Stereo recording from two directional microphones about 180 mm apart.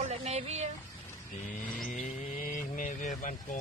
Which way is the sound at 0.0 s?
35° right (ahead or behind).